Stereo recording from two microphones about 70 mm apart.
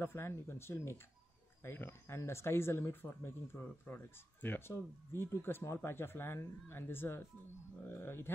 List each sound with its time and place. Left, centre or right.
0.0 s speech: left
2.0 s speech: left